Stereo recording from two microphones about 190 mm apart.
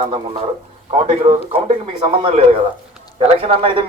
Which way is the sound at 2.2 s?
30° right (ahead or behind).